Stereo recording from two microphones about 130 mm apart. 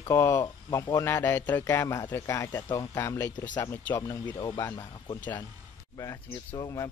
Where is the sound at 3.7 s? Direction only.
15° left (ahead or behind).